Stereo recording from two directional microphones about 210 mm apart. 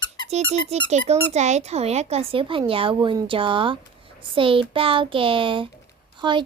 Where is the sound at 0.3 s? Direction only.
30° right (ahead or behind).